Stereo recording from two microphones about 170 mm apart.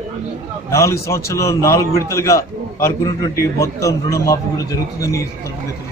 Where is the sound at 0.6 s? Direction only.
15° left (ahead or behind).